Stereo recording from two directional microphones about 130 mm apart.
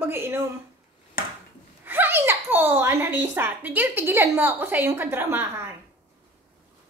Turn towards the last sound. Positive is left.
turn(degrees=-15)  # may be behind; listen again after turning